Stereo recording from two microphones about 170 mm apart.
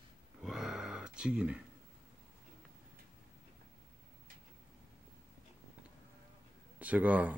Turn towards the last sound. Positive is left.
turn(degrees=-10)  # may be behind; listen again after turning